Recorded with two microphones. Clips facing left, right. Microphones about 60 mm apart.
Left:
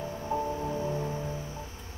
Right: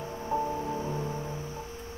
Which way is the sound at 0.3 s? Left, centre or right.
Centre.